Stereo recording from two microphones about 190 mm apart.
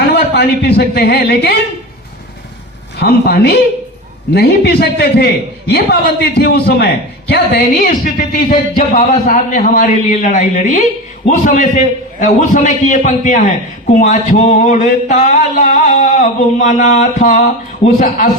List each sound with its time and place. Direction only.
0.3 s a man's voice: 60° left (ahead or behind)
3.0 s a man's voice: 55° left (ahead or behind)
8.0 s speech: 45° left (ahead or behind)
11.3 s a sound: 40° left (ahead or behind)
17.8 s speech: 45° left (ahead or behind)